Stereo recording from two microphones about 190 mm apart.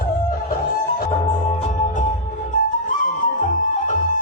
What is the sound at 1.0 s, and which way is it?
Music, 40° left (ahead or behind).